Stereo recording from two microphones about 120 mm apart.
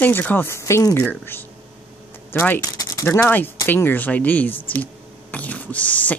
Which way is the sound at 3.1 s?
15° left (ahead or behind).